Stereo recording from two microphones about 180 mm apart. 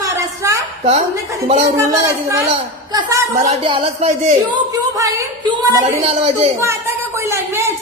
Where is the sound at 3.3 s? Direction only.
45° right (ahead or behind).